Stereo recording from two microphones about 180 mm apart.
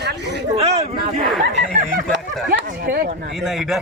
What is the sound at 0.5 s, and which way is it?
Speech, 35° right (ahead or behind).